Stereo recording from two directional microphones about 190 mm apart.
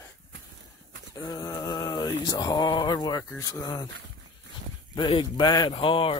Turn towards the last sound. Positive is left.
turn(degrees=30)  # may be behind; listen again after turning